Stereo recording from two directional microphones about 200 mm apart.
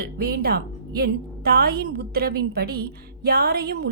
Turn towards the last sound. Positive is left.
turn(degrees=-50)  # may be behind; listen again after turning